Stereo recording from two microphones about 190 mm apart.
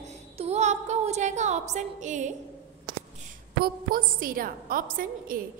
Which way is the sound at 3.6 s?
50° right (ahead or behind).